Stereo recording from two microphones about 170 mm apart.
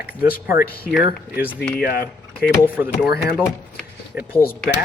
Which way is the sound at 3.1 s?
70° left (ahead or behind).